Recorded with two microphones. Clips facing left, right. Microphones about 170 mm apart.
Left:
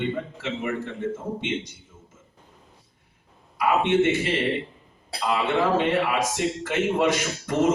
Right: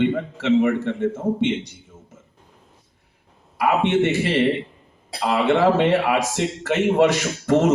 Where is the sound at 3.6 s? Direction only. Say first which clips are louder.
Right 2 dB; 65° right (ahead or behind).